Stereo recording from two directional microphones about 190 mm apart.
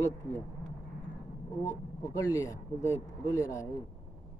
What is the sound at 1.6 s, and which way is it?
Speech, 15° left (ahead or behind).